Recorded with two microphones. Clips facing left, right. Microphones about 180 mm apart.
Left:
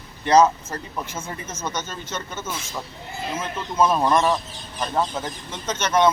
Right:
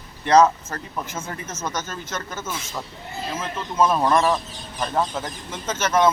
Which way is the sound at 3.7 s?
5° left (ahead or behind).